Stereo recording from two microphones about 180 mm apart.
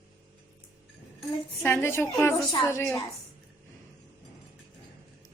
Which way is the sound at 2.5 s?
20° left (ahead or behind).